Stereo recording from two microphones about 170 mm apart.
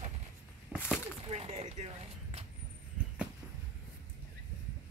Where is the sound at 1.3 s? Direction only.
35° right (ahead or behind).